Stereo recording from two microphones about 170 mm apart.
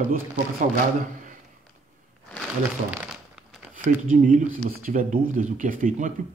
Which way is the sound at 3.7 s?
50° right (ahead or behind).